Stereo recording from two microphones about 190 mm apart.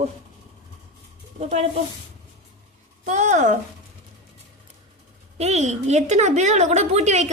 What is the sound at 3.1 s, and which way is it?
Speech, 40° right (ahead or behind).